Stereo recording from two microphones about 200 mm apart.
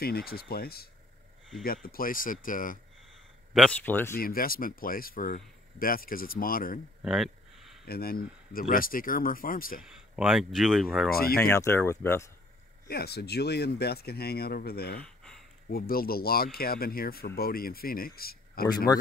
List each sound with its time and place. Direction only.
0.0 s speech: 50° left (ahead or behind)
3.5 s speech: 5° left (ahead or behind)
4.2 s speech: 45° left (ahead or behind)
7.0 s a sound: centre (ahead or behind)
7.8 s speech: 50° left (ahead or behind)
9.8 s speech: 5° right (ahead or behind)
11.1 s speech: 50° left (ahead or behind)
11.3 s speech: 10° left (ahead or behind)
12.8 s speech: 50° left (ahead or behind)
15.0 s a sound: 5° left (ahead or behind)
15.7 s speech: 50° left (ahead or behind)